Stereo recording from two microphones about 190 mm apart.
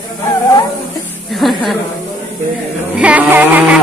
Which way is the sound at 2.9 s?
5° right (ahead or behind).